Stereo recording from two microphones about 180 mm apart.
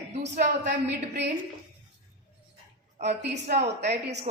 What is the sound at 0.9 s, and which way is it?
Speech, 70° right (ahead or behind).